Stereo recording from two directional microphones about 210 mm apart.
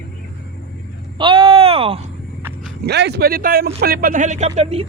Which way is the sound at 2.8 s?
50° right (ahead or behind).